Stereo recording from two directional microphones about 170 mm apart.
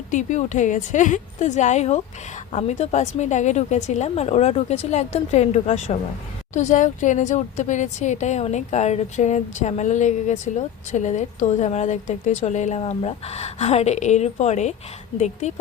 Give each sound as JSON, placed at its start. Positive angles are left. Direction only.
{"t": 0.1, "sound": "a woman's voice", "side_deg": 45}